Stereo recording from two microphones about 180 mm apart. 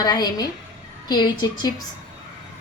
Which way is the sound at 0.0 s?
20° left (ahead or behind).